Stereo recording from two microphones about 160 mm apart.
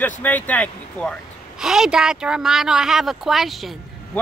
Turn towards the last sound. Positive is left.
turn(degrees=0)  # may be behind; listen again after turning